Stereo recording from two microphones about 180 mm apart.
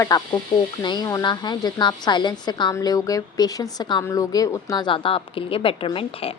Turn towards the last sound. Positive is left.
turn(degrees=30)  # may be behind; listen again after turning